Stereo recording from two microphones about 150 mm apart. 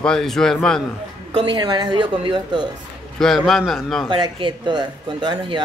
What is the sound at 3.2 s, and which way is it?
Speech, centre (ahead or behind).